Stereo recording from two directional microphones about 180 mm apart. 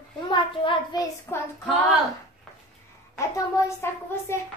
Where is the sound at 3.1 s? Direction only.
15° left (ahead or behind).